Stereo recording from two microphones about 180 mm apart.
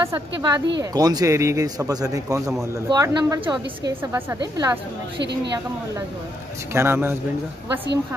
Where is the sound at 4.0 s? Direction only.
15° right (ahead or behind).